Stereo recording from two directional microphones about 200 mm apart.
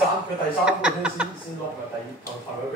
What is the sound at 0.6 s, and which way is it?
Speech, 5° right (ahead or behind).